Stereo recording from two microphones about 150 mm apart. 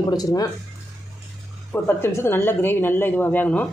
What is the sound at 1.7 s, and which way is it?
Speech, 15° left (ahead or behind).